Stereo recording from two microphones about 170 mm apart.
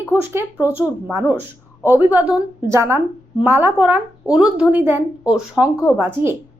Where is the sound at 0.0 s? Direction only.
10° right (ahead or behind).